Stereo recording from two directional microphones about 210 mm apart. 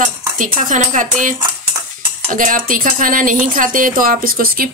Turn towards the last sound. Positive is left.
turn(degrees=-45)  # may be behind; listen again after turning